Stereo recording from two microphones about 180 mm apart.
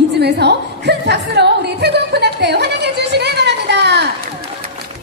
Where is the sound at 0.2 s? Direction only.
65° right (ahead or behind).